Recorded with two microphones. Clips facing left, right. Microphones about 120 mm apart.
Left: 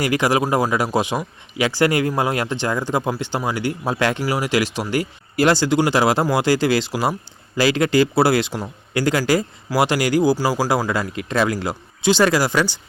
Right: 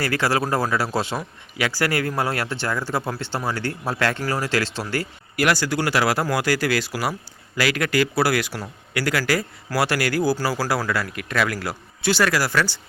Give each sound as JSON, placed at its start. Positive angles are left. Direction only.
{"t": 0.0, "sound": "speech", "side_deg": 15}
{"t": 5.4, "sound": "speech", "side_deg": 25}